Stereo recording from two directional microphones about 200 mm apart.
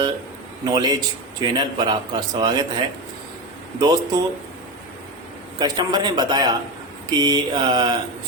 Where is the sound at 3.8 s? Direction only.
20° right (ahead or behind).